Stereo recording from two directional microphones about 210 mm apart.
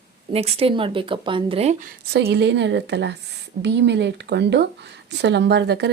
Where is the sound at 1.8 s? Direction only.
50° right (ahead or behind).